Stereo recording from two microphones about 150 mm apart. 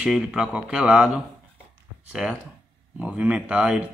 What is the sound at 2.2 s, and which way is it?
Speech, 5° right (ahead or behind).